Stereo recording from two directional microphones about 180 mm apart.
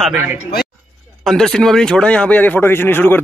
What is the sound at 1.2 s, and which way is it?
A man's voice, centre (ahead or behind).